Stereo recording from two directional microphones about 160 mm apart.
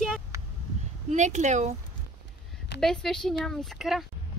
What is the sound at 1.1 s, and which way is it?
Speech, 50° right (ahead or behind).